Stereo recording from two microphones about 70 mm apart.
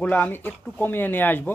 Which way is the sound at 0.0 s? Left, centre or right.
Left.